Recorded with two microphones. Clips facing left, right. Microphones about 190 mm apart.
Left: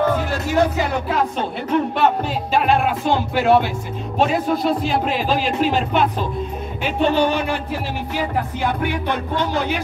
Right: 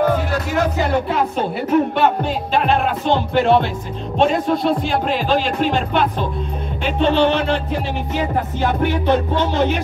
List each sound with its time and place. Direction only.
1.7 s music: centre (ahead or behind)
4.2 s speech: 5° left (ahead or behind)
6.8 s music: 10° left (ahead or behind)
9.0 s music: 25° right (ahead or behind)